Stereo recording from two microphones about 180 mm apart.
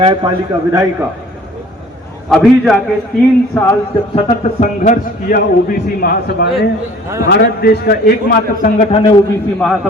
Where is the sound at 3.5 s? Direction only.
5° left (ahead or behind).